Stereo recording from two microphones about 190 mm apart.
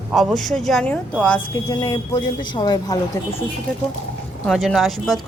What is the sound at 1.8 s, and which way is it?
Speech, 20° left (ahead or behind).